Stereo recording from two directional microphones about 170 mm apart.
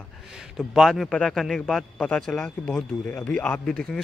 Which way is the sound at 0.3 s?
5° right (ahead or behind).